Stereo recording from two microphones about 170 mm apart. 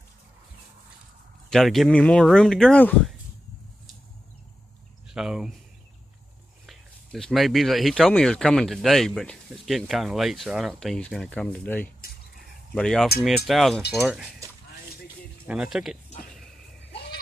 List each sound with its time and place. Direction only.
1.5 s speech: centre (ahead or behind)
5.1 s speech: 5° right (ahead or behind)
6.6 s speech: centre (ahead or behind)
15.4 s speech: 5° right (ahead or behind)